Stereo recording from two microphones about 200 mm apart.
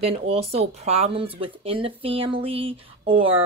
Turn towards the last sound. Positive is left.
turn(degrees=-25)  # may be behind; listen again after turning